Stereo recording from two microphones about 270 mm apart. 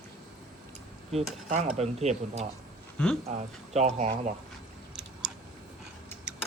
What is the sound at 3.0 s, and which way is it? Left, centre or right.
Speech, centre.